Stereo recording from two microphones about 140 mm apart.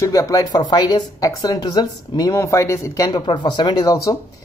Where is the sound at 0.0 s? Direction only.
25° left (ahead or behind).